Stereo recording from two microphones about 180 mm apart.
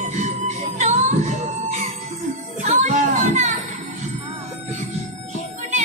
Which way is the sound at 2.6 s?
40° right (ahead or behind).